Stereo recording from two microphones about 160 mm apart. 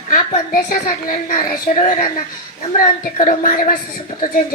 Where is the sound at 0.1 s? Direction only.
60° left (ahead or behind).